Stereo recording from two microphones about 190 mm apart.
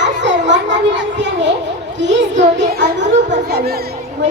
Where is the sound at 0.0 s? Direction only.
70° right (ahead or behind).